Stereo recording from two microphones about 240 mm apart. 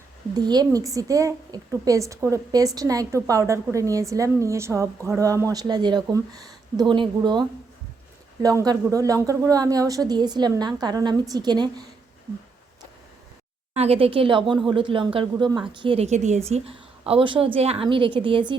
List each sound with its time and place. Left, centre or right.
0.3 s a woman's voice: centre
13.7 s a woman's voice: right